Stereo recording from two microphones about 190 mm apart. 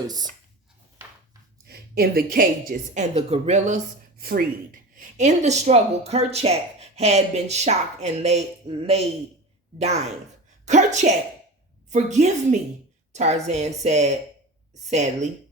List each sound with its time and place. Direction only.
1.6 s speech: 55° right (ahead or behind); by 3.8 s 35° right (ahead or behind)
4.2 s a woman's voice: 50° right (ahead or behind)